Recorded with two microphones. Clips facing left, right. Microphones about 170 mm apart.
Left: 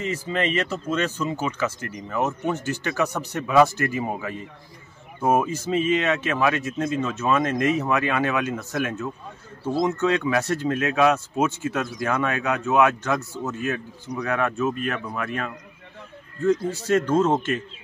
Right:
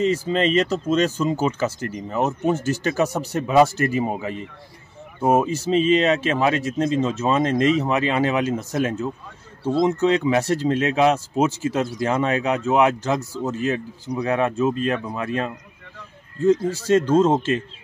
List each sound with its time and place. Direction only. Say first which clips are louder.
0.0 s speech: right 6 dB; 30° right (ahead or behind)
2.5 s speech: right 5 dB; 35° right (ahead or behind)